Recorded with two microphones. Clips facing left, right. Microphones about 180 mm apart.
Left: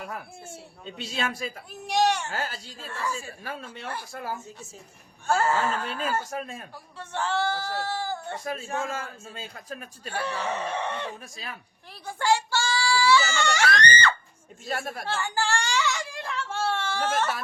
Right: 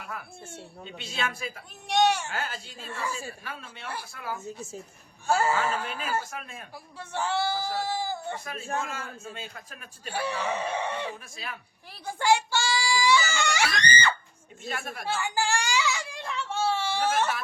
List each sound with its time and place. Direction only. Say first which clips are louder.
1.1 s a man's voice: left 2 dB; 40° left (ahead or behind)
1.9 s speech: even; centre (ahead or behind)
2.3 s a man's voice: left 1 dB; 35° left (ahead or behind)
5.3 s speech: left 1 dB; 10° right (ahead or behind)
6.3 s a man's voice: left 6 dB; 40° left (ahead or behind)
7.0 s speech: left 1 dB; 10° right (ahead or behind)
8.5 s a man's voice: even; 40° right (ahead or behind)
8.8 s a man's voice: left 3 dB; 40° left (ahead or behind)
10.1 s speech: even; 10° right (ahead or behind)
12.0 s a sound: right 1 dB; 15° right (ahead or behind)
14.7 s a man's voice: left 4 dB; 40° left (ahead or behind)
15.0 s baby cry: right 2 dB; 10° right (ahead or behind)